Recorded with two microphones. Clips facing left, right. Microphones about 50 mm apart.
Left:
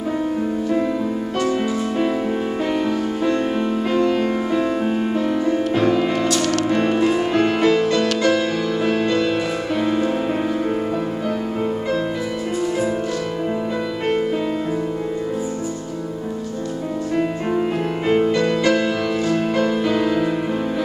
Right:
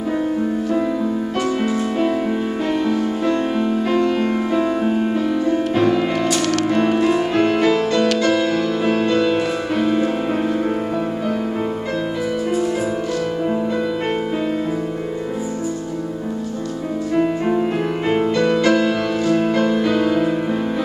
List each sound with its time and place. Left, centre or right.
3.9 s music: centre
6.2 s music: right
6.7 s music: centre
8.1 s music: centre
8.4 s music: centre
17.1 s music: centre